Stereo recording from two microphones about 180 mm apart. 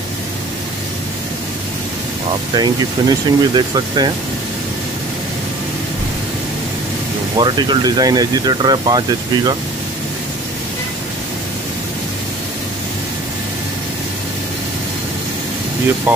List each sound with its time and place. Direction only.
2.5 s speech: 25° right (ahead or behind)
7.3 s speech: 25° right (ahead or behind)